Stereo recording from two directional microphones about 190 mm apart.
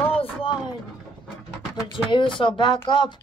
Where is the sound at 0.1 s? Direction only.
30° left (ahead or behind).